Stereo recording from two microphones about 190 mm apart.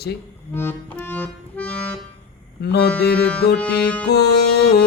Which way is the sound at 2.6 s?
60° left (ahead or behind).